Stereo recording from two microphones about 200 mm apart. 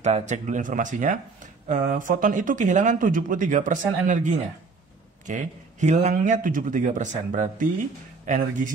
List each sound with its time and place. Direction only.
0.0 s speech: 35° right (ahead or behind)